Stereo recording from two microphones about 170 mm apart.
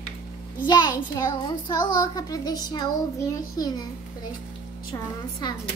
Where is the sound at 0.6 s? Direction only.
25° left (ahead or behind).